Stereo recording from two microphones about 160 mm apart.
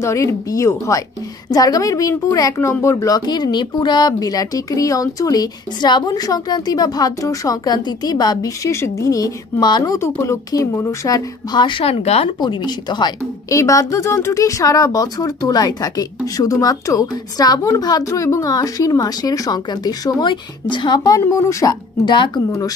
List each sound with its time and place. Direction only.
0.0 s a woman's voice: 20° left (ahead or behind); by 12.3 s 40° left (ahead or behind)
12.4 s a woman's voice: 25° left (ahead or behind)